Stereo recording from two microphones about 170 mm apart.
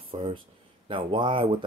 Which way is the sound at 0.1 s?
30° right (ahead or behind).